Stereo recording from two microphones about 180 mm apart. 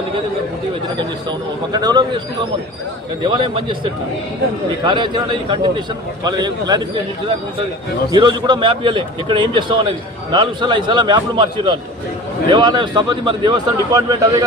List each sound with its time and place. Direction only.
0.9 s a man's voice: 25° right (ahead or behind)
3.2 s a man's voice: 25° right (ahead or behind)
4.9 s a man's voice: 25° right (ahead or behind)
8.1 s a man's voice: 25° right (ahead or behind)